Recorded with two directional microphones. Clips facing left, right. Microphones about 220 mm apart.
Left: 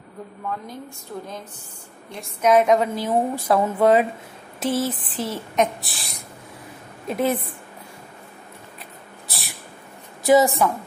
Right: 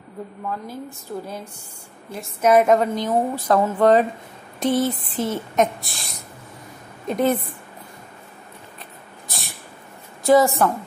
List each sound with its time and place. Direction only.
0.5 s a woman's voice: 5° right (ahead or behind)
7.1 s speech: centre (ahead or behind)
10.2 s a woman's voice: 20° left (ahead or behind)